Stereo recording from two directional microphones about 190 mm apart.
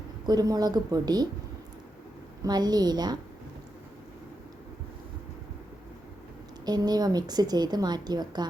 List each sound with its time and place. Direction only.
0.3 s a woman's voice: 20° right (ahead or behind)
2.4 s a woman's voice: 20° right (ahead or behind)
6.7 s a woman's voice: 20° right (ahead or behind)